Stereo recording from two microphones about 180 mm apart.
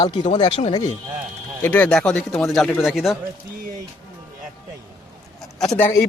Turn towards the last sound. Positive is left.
turn(degrees=10)  # may be behind; listen again after turning